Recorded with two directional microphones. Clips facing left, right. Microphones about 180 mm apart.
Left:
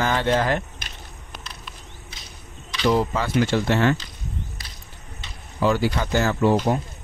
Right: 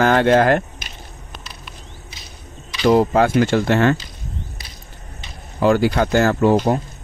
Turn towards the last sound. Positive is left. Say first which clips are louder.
# right 4 dB
turn(degrees=-45)  # may be behind; listen again after turning